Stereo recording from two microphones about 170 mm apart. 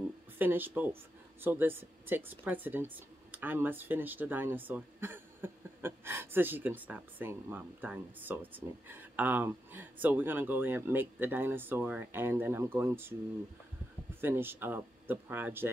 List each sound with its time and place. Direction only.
0.4 s speech: 10° right (ahead or behind)
14.2 s speech: 10° right (ahead or behind)